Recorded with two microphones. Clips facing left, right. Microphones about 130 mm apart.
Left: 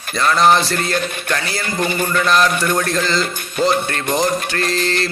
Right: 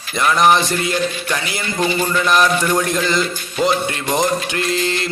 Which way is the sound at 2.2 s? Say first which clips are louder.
Even; 15° right (ahead or behind).